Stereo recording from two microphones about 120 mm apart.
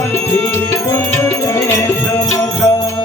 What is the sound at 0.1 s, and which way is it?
Music, 20° left (ahead or behind).